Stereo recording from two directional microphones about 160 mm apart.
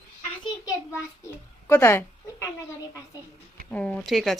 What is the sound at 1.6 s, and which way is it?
Speech, 15° left (ahead or behind).